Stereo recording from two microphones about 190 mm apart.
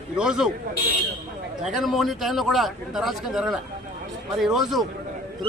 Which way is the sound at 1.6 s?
Centre (ahead or behind).